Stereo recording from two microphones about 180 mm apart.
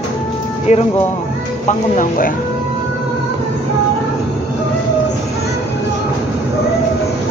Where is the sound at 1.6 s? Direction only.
45° left (ahead or behind).